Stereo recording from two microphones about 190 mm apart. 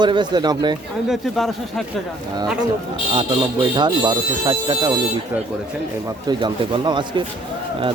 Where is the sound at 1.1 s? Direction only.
Centre (ahead or behind).